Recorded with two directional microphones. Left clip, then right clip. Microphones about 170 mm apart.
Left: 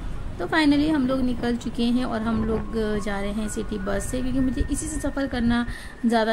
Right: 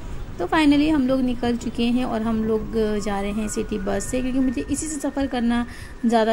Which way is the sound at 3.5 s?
45° right (ahead or behind).